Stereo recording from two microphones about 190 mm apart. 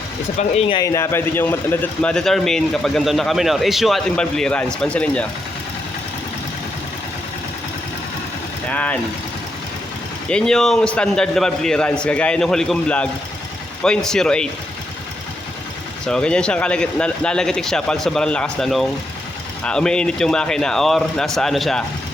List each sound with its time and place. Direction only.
0.3 s speech: 30° left (ahead or behind)
0.8 s a man's voice: 15° left (ahead or behind)
8.7 s speech: 5° left (ahead or behind)
10.2 s a man's voice: 5° left (ahead or behind)
16.0 s a man's voice: 5° left (ahead or behind)